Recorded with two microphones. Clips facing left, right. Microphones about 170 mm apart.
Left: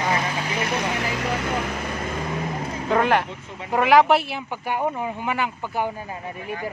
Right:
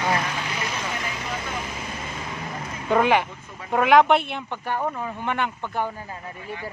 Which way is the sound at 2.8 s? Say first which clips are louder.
Right 1 dB; centre (ahead or behind).